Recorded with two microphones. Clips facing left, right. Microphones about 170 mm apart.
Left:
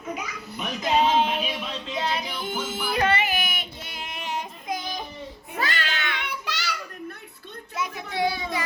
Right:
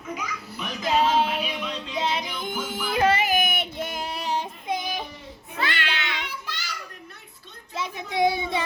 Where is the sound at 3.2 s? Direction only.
45° right (ahead or behind); by 4.8 s 30° right (ahead or behind).